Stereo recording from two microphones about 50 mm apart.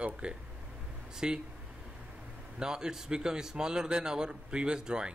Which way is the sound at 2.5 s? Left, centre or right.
Centre.